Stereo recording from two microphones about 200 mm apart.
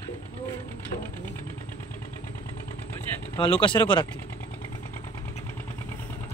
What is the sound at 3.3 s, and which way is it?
Speech, 25° left (ahead or behind).